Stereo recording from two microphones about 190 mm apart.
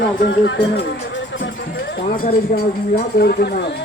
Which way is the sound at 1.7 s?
65° left (ahead or behind).